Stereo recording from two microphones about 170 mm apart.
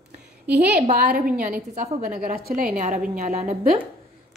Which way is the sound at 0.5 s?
75° right (ahead or behind).